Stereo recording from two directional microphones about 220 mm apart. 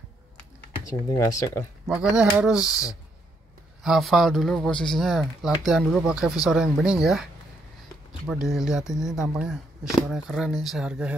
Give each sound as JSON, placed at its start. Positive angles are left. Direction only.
{"t": 1.1, "sound": "speech", "side_deg": 15}
{"t": 2.0, "sound": "speech", "side_deg": -5}
{"t": 2.6, "sound": "speech", "side_deg": 15}
{"t": 3.8, "sound": "speech", "side_deg": 0}
{"t": 8.3, "sound": "speech", "side_deg": 0}